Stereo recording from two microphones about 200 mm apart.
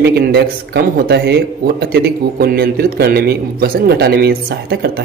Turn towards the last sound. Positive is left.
turn(degrees=-50)  # may be behind; listen again after turning